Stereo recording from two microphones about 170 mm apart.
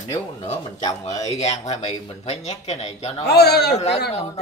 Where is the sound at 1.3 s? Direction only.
40° left (ahead or behind).